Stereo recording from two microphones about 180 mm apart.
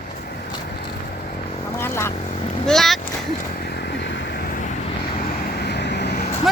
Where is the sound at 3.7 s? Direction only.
65° left (ahead or behind).